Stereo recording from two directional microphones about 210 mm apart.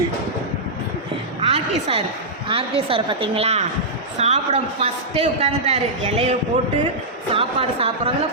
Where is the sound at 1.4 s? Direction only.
30° right (ahead or behind).